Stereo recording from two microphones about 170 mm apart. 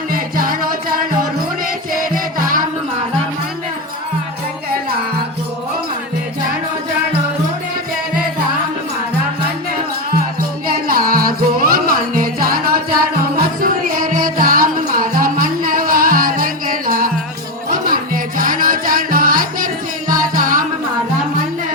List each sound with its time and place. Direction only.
0.1 s music: 55° right (ahead or behind)
10.7 s music: 60° right (ahead or behind)